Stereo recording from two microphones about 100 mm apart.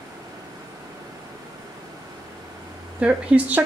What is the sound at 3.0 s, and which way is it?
Speech, 15° right (ahead or behind).